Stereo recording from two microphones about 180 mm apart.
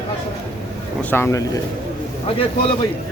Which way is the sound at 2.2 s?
30° left (ahead or behind).